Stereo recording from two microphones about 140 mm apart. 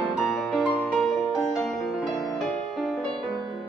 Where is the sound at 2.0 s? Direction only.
30° left (ahead or behind).